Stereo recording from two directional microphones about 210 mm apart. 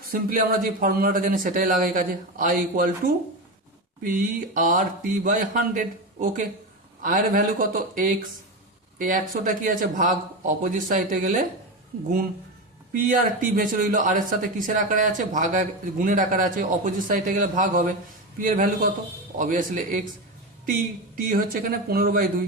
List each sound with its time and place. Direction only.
0.0 s speech: 40° right (ahead or behind)
12.9 s speech: 40° right (ahead or behind)
21.2 s speech: 45° right (ahead or behind)